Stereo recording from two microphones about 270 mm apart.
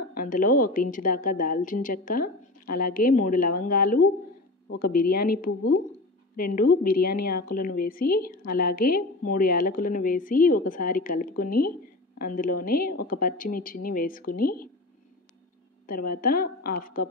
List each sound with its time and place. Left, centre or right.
0.1 s a woman's voice: left
15.9 s a woman's voice: left